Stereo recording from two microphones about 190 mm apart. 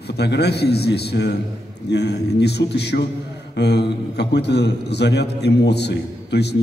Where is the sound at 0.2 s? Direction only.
60° left (ahead or behind).